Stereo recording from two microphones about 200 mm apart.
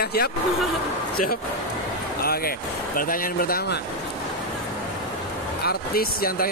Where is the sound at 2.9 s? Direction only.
45° left (ahead or behind).